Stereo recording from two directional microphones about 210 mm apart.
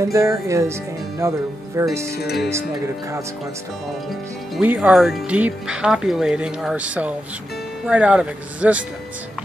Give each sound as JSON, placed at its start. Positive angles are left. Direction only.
{"t": 0.1, "sound": "speech", "side_deg": -15}
{"t": 2.1, "sound": "speech", "side_deg": 50}
{"t": 4.6, "sound": "speech", "side_deg": -5}